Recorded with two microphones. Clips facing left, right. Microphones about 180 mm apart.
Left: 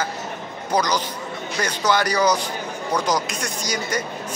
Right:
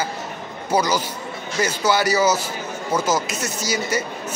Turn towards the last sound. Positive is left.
turn(degrees=-5)  # may be behind; listen again after turning